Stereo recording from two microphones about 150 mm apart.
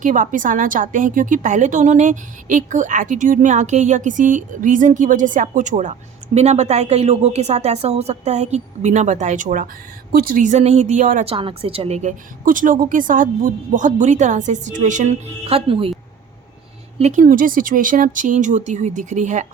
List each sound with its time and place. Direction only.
0.0 s a woman's voice: 60° right (ahead or behind)
10.1 s a woman's voice: 75° right (ahead or behind); by 11.3 s 55° right (ahead or behind)
11.3 s a woman's voice: 35° right (ahead or behind)
17.0 s a woman's voice: 55° right (ahead or behind)